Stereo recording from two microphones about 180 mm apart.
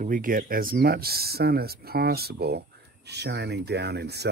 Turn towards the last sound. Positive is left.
turn(degrees=-65)  # may be behind; listen again after turning